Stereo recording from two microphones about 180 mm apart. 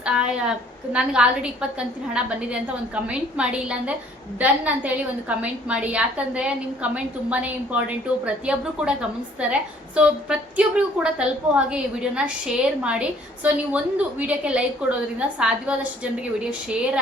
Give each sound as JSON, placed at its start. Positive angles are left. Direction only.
{"t": 0.0, "sound": "a woman's voice", "side_deg": -5}